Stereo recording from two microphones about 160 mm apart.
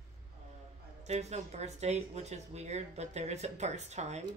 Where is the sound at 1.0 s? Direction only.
45° right (ahead or behind).